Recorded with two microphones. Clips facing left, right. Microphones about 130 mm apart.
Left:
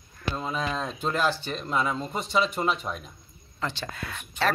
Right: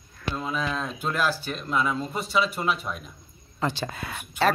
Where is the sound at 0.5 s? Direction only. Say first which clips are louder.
Right 1 dB; 35° left (ahead or behind).